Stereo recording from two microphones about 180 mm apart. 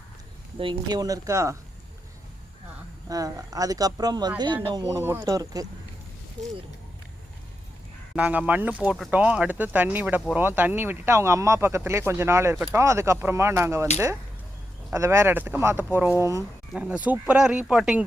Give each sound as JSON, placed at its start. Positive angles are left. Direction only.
{"t": 0.6, "sound": "speech", "side_deg": -25}
{"t": 3.1, "sound": "speech", "side_deg": -20}
{"t": 8.1, "sound": "speech", "side_deg": -10}
{"t": 14.9, "sound": "speech", "side_deg": -15}